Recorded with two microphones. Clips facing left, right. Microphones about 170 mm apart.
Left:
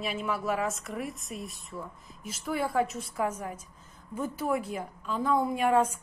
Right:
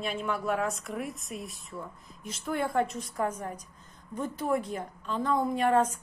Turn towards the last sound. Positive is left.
turn(degrees=10)  # may be behind; listen again after turning